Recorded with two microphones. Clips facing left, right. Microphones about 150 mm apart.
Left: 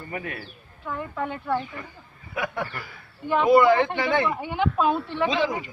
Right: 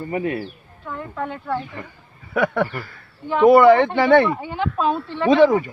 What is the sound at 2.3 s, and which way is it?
Speech, 65° right (ahead or behind).